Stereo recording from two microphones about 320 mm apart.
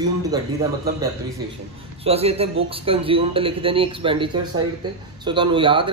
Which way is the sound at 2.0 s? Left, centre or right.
Centre.